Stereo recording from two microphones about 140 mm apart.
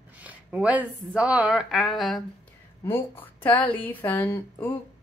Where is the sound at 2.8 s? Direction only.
15° left (ahead or behind).